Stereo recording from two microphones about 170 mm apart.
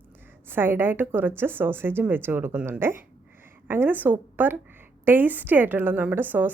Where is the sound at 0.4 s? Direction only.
10° right (ahead or behind).